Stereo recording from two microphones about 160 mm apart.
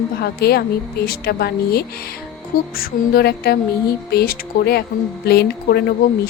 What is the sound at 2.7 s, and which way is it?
A woman's voice, 65° left (ahead or behind).